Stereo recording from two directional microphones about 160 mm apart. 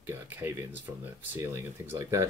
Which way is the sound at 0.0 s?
15° right (ahead or behind).